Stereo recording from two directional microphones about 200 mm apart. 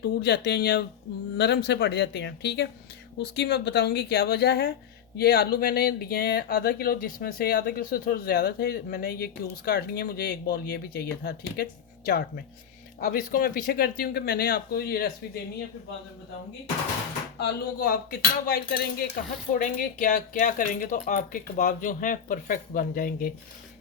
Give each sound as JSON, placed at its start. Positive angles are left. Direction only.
{"t": 0.0, "sound": "speech", "side_deg": 55}
{"t": 17.4, "sound": "speech", "side_deg": 45}